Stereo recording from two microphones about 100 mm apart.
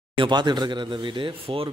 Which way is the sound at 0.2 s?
50° right (ahead or behind).